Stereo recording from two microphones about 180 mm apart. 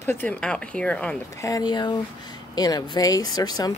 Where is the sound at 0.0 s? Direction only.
10° left (ahead or behind).